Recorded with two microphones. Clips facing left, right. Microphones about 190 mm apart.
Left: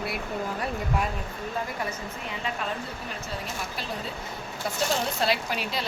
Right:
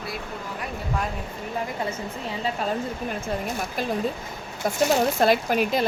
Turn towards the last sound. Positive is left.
turn(degrees=-50)  # may be behind; listen again after turning